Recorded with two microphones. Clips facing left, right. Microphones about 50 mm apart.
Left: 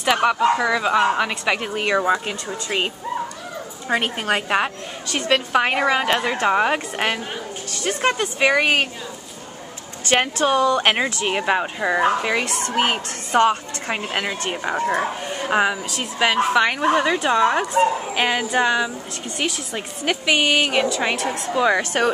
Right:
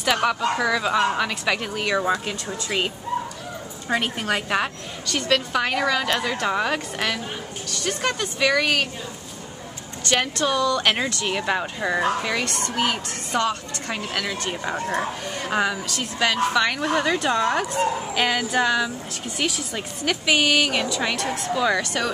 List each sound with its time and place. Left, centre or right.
0.0 s a woman's voice: centre
3.9 s a woman's voice: left
10.4 s a woman's voice: left
12.4 s a woman's voice: centre
12.7 s a woman's voice: left